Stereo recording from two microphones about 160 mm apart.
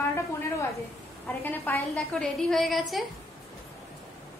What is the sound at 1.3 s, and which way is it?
Speech, 15° left (ahead or behind).